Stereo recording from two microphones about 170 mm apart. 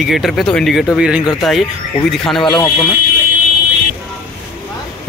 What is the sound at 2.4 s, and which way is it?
Speech, 25° left (ahead or behind).